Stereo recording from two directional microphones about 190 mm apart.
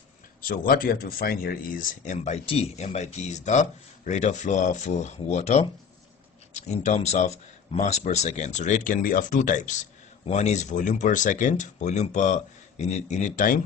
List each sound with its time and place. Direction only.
0.4 s speech: 50° left (ahead or behind)